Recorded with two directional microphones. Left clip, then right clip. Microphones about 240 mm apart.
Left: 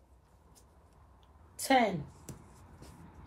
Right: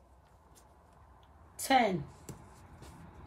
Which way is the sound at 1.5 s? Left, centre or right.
Centre.